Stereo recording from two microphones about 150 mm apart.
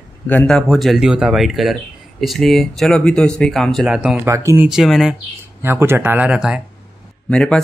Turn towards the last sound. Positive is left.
turn(degrees=5)  # may be behind; listen again after turning